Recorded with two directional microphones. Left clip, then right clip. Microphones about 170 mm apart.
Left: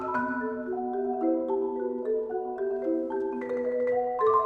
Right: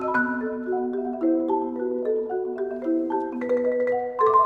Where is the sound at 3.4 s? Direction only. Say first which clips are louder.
Right 8 dB; 30° right (ahead or behind).